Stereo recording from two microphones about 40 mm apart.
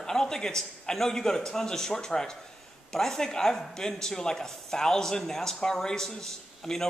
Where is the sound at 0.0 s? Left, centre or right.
Centre.